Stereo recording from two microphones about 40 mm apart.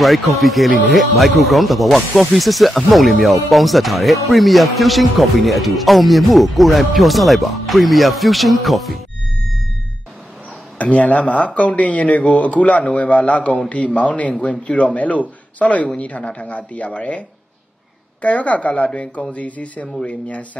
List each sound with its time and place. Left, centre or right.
0.0 s speech: centre
10.8 s speech: left
18.2 s speech: left